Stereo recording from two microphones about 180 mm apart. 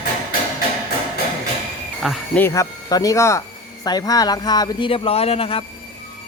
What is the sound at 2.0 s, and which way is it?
Speech, centre (ahead or behind).